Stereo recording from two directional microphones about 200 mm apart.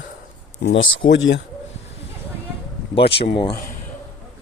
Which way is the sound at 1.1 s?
65° left (ahead or behind).